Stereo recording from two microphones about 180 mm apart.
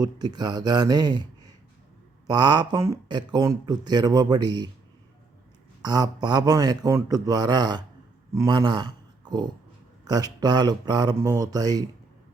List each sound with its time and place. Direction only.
0.0 s speech: 20° right (ahead or behind)
5.8 s speech: 20° right (ahead or behind)